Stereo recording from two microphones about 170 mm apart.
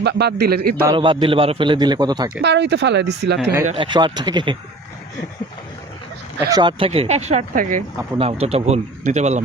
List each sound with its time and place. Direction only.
0.0 s a man's voice: 80° right; by 0.8 s 65° right (ahead or behind)
0.9 s a man's voice: 30° right (ahead or behind)
2.4 s speech: 90° right
3.8 s a man's voice: 25° right (ahead or behind)
6.5 s speech: 25° right (ahead or behind)
7.5 s speech: 50° right (ahead or behind)
8.2 s speech: 35° right (ahead or behind)